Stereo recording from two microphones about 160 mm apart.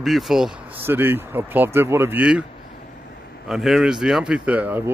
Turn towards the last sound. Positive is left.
turn(degrees=-10)  # may be behind; listen again after turning